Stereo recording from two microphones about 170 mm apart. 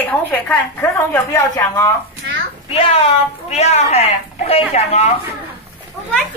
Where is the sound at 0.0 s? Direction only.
10° left (ahead or behind).